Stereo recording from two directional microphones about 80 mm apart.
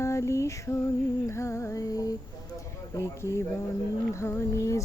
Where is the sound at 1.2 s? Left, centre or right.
Left.